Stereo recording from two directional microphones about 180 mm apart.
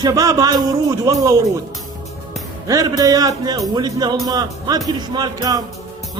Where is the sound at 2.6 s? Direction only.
20° right (ahead or behind).